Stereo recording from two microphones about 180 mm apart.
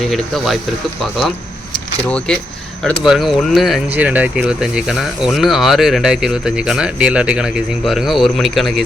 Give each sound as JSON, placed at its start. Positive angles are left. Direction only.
{"t": 0.1, "sound": "speech", "side_deg": 0}
{"t": 2.0, "sound": "speech", "side_deg": 5}